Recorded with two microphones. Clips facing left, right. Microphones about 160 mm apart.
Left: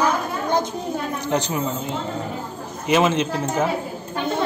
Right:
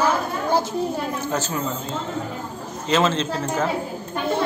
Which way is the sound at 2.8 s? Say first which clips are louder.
Left 2 dB; 10° left (ahead or behind).